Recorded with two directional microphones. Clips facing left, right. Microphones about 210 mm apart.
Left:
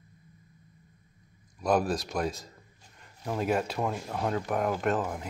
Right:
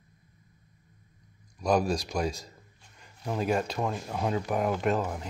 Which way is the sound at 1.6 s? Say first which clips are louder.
Right 1 dB; 5° left (ahead or behind).